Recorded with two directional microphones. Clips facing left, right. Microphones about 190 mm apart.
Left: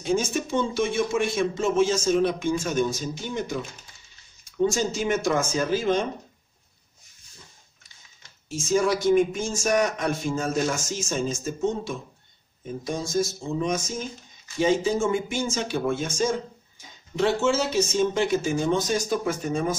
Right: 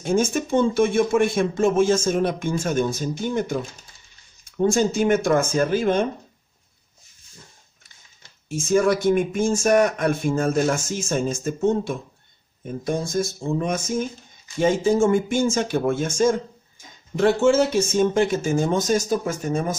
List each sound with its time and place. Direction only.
0.0 s speech: 50° right (ahead or behind)
8.5 s speech: 55° right (ahead or behind)